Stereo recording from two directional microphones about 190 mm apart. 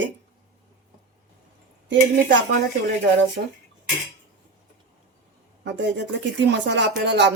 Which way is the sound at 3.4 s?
50° right (ahead or behind).